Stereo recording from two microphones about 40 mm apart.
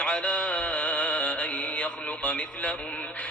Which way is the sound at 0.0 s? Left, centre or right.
Left.